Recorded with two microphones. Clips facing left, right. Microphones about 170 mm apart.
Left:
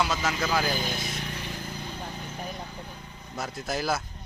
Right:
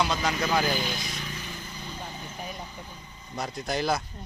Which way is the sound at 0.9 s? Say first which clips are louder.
Left 1 dB; 60° left (ahead or behind).